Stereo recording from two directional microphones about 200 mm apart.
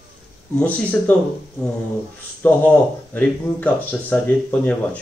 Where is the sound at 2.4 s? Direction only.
10° left (ahead or behind).